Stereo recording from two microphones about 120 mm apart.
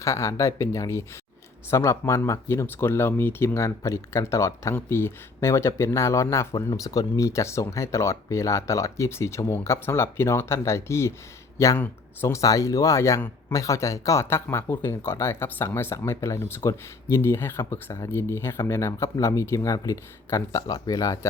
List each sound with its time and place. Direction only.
0.0 s speech: 25° left (ahead or behind)